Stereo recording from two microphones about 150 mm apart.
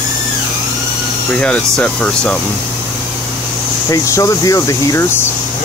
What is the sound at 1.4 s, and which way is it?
Speech, 10° left (ahead or behind).